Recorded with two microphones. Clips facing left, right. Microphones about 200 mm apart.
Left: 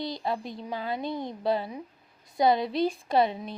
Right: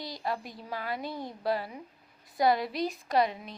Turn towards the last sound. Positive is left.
turn(degrees=30)  # may be behind; listen again after turning